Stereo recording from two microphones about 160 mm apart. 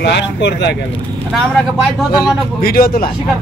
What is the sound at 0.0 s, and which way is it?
Speech, 90° left.